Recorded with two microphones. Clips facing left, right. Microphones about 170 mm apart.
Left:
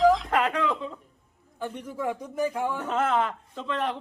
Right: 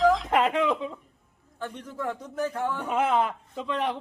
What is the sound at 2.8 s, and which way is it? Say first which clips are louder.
A man's voice: right 2 dB; 10° right (ahead or behind).